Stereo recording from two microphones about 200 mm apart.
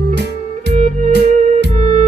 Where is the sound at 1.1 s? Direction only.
55° right (ahead or behind).